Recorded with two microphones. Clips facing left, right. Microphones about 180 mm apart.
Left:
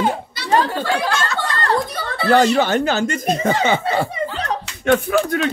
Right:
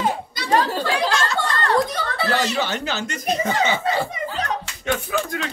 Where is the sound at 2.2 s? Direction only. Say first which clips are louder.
Left 9 dB; 55° left (ahead or behind).